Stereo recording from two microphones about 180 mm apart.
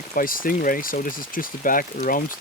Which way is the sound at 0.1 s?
50° left (ahead or behind).